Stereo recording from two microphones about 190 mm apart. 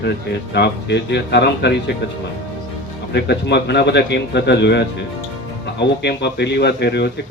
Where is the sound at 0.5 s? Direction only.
65° left (ahead or behind).